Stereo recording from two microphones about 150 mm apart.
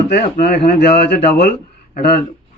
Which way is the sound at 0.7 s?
90° left.